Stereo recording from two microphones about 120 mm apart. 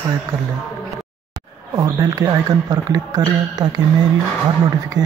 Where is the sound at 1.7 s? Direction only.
30° right (ahead or behind).